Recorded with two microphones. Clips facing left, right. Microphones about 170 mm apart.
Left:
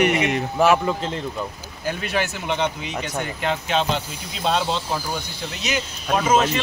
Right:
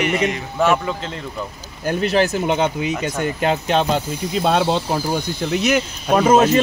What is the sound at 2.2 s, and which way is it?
Speech, 40° right (ahead or behind).